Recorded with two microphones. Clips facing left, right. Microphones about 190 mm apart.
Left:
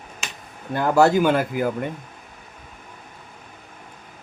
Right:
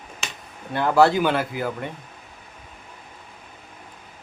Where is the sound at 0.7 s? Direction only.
45° left (ahead or behind).